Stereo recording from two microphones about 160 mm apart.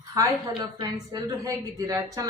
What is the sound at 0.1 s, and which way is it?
Speech, 25° right (ahead or behind).